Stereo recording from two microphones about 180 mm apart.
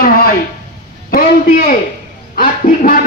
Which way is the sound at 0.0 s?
55° left (ahead or behind).